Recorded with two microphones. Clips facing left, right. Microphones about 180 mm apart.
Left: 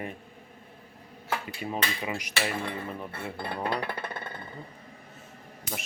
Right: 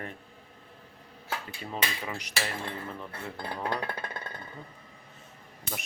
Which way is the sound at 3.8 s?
70° left (ahead or behind).